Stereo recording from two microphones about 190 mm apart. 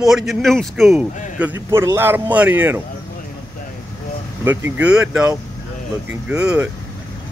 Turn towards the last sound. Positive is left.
turn(degrees=-5)  # may be behind; listen again after turning